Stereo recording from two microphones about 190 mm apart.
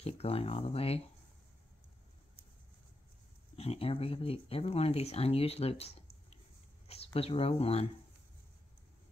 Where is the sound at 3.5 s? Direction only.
30° left (ahead or behind).